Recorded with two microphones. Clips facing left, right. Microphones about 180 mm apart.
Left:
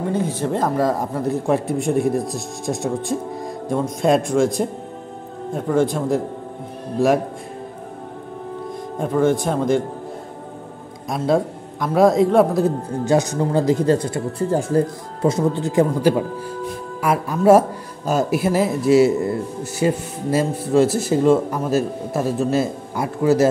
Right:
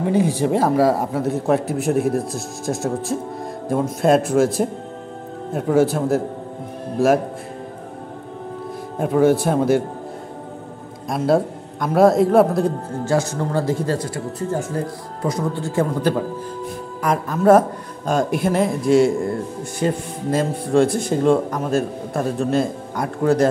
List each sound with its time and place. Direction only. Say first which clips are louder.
0.0 s speech: right 3 dB; 10° right (ahead or behind)
8.9 s speech: right 2 dB; 5° right (ahead or behind)
11.1 s a man's voice: right 1 dB; centre (ahead or behind)
13.0 s speech: left 2 dB; 15° left (ahead or behind)
14.4 s speech: left 4 dB; 35° left (ahead or behind)
15.2 s speech: left 4 dB; 20° left (ahead or behind); by 23.5 s 5° left (ahead or behind)